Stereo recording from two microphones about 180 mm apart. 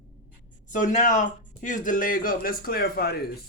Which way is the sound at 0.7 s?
45° left (ahead or behind).